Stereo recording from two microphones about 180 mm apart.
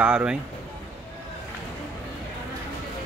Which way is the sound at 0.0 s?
5° right (ahead or behind).